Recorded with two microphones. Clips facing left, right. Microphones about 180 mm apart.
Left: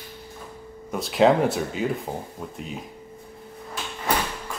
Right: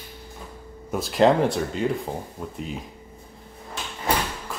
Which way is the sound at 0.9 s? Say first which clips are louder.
Even; centre (ahead or behind).